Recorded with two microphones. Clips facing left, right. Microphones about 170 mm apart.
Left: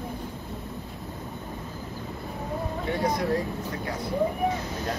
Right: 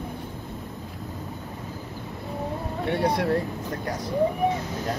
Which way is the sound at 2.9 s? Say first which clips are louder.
Right 3 dB; 65° right (ahead or behind).